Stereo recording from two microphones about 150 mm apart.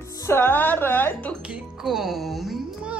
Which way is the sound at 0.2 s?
15° left (ahead or behind).